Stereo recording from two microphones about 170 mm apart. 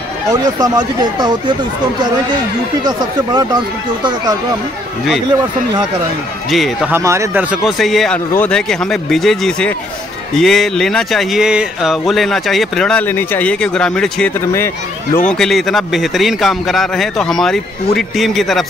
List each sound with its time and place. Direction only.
0.3 s speech: 25° right (ahead or behind)
2.8 s speech: 25° right (ahead or behind)
6.5 s speech: centre (ahead or behind)
6.9 s speech: 15° right (ahead or behind)
7.6 s speech: centre (ahead or behind)